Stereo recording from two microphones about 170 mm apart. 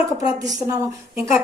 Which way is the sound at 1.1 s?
15° right (ahead or behind).